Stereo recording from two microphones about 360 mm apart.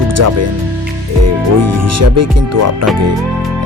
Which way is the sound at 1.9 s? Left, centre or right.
Right.